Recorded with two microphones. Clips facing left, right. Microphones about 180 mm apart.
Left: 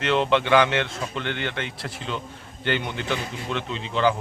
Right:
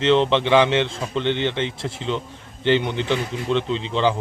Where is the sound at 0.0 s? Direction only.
25° right (ahead or behind).